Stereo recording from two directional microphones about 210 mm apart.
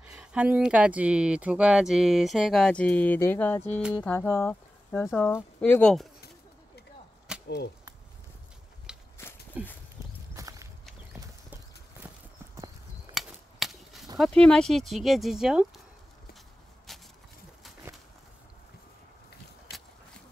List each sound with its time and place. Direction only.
0.0 s speech: 5° right (ahead or behind)
7.4 s speech: 50° left (ahead or behind)
8.9 s a sound: 5° right (ahead or behind)
9.5 s horse: 5° right (ahead or behind)
10.3 s walk: 15° right (ahead or behind)
13.1 s a sound: centre (ahead or behind)
14.1 s speech: centre (ahead or behind)